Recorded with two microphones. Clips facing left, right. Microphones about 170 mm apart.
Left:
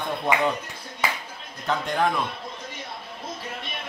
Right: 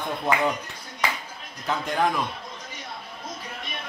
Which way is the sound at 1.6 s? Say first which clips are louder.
Left 1 dB; centre (ahead or behind).